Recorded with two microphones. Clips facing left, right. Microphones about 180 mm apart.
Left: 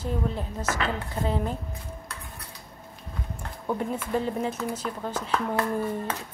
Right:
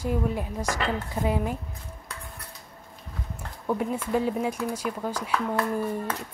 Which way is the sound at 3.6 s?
5° right (ahead or behind).